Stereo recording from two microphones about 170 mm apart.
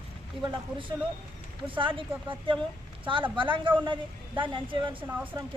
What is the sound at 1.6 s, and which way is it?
Speech, 30° right (ahead or behind).